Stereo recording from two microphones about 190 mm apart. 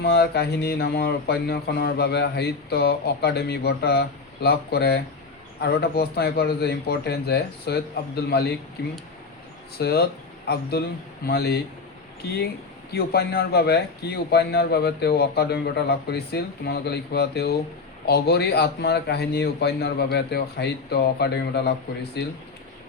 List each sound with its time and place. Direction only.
0.0 s speech: 60° left (ahead or behind)
12.9 s speech: 55° left (ahead or behind)